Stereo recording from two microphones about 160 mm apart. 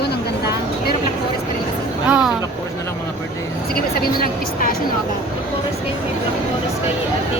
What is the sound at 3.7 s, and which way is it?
Speech, 70° left (ahead or behind).